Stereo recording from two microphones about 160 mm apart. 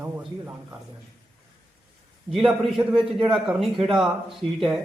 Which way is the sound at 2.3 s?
Centre (ahead or behind).